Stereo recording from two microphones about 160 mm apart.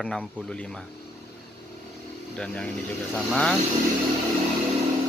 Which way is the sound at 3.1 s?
5° left (ahead or behind).